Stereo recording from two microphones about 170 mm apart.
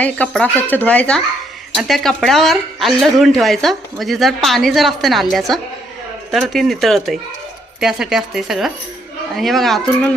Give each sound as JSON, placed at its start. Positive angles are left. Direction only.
{"t": 0.0, "sound": "a woman's voice", "side_deg": 10}